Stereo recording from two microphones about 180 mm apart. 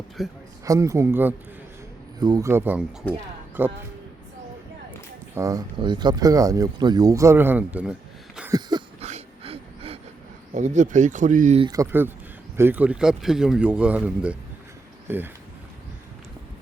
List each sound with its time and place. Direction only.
0.2 s speech: centre (ahead or behind)
0.6 s speech: 15° right (ahead or behind)
5.3 s speech: 20° right (ahead or behind)
8.4 s a sound: 5° right (ahead or behind)
9.0 s a sound: 35° right (ahead or behind)
10.5 s speech: 45° right (ahead or behind)
11.6 s speech: 20° right (ahead or behind)